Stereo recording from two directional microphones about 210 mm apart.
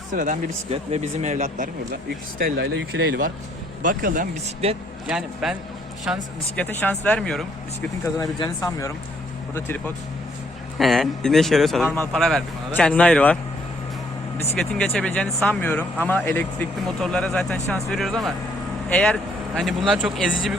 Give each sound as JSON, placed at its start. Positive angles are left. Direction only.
{"t": 0.1, "sound": "speech", "side_deg": -35}
{"t": 2.4, "sound": "speech", "side_deg": -50}
{"t": 5.0, "sound": "speech", "side_deg": 0}
{"t": 6.6, "sound": "speech", "side_deg": 10}
{"t": 8.0, "sound": "speech", "side_deg": 15}
{"t": 14.6, "sound": "speech", "side_deg": 5}